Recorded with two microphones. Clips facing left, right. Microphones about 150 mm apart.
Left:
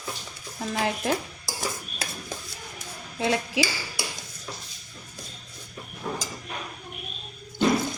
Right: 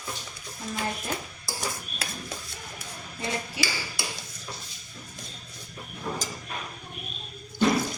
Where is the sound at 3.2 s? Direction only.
90° left.